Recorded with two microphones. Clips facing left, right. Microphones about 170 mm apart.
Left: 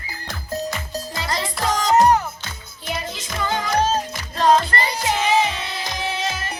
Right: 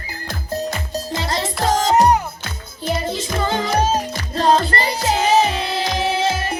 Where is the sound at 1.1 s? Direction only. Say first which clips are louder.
Right 3 dB; 25° right (ahead or behind).